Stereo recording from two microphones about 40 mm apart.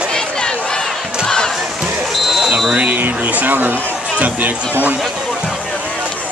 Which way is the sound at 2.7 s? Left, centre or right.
Right.